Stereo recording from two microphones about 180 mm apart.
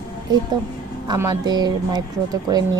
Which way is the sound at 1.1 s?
20° right (ahead or behind).